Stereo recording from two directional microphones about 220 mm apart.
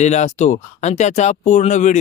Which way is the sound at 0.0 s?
30° left (ahead or behind).